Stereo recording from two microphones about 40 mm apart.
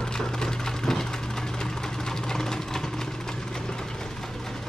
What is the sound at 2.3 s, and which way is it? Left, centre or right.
Vehicle, centre.